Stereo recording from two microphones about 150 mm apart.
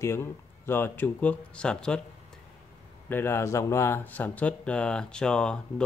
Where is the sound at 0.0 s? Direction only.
15° left (ahead or behind).